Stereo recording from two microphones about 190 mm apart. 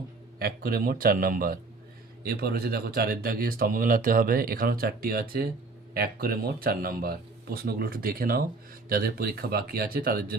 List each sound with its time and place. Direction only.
0.3 s speech: 55° right (ahead or behind)